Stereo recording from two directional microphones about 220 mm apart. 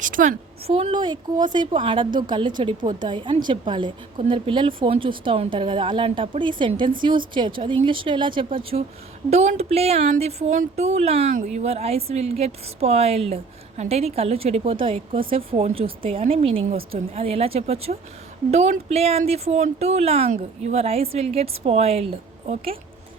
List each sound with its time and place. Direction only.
0.0 s a woman's voice: 35° right (ahead or behind)
0.7 s a woman's voice: 25° right (ahead or behind)